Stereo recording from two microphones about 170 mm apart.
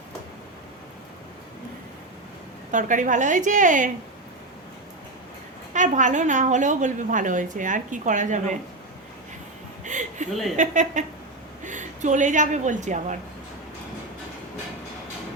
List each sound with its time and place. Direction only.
2.7 s a woman's voice: 50° right (ahead or behind)
5.7 s a woman's voice: 45° right (ahead or behind)
9.8 s a sound: 45° right (ahead or behind)
10.6 s a woman's voice: 45° right (ahead or behind)